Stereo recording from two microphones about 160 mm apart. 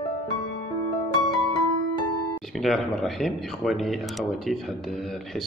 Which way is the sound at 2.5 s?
Centre (ahead or behind).